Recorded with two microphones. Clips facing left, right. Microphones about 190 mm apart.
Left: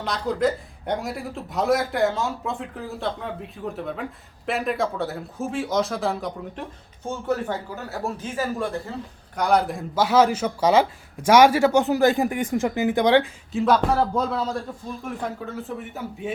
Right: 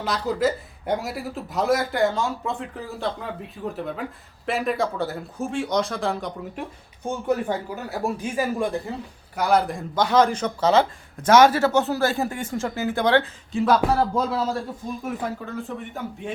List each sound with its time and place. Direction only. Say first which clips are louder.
0.0 s a man's voice: even; 5° right (ahead or behind)
7.0 s speech: right 2 dB; 15° right (ahead or behind)
9.3 s speech: even; 5° right (ahead or behind); by 13.2 s 15° left (ahead or behind)
13.5 s a man's voice: even; centre (ahead or behind)